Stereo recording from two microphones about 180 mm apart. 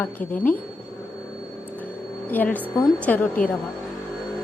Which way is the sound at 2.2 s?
10° left (ahead or behind).